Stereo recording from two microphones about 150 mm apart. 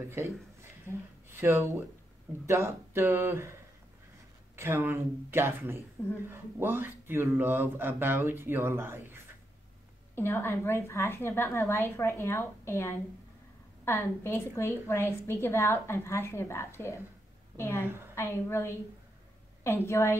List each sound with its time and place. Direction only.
0.1 s a man's voice: 15° right (ahead or behind)
0.9 s a woman's voice: 15° left (ahead or behind)
1.3 s speech: 20° right (ahead or behind)
4.6 s speech: 15° right (ahead or behind)
10.1 s a woman's voice: 15° left (ahead or behind)